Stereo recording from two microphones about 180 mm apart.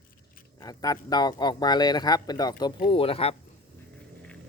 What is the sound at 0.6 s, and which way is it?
Speech, 20° left (ahead or behind).